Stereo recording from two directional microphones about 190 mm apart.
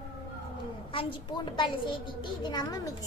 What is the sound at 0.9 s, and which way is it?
A child's voice, 30° left (ahead or behind).